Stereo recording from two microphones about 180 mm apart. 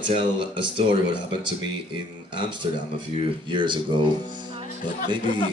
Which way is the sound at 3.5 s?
25° right (ahead or behind).